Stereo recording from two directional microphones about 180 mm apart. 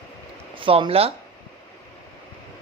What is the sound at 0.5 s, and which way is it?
Speech, 30° right (ahead or behind).